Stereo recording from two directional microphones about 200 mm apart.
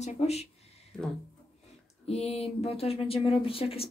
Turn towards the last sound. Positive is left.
turn(degrees=30)  # may be behind; listen again after turning